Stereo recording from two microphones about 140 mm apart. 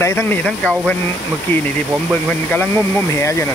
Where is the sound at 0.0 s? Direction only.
20° left (ahead or behind).